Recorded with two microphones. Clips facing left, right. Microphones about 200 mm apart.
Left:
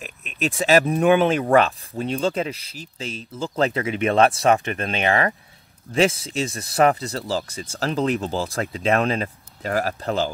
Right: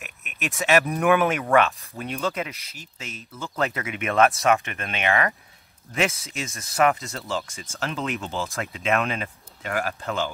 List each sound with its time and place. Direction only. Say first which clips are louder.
0.0 s speech: left 7 dB; 30° left (ahead or behind)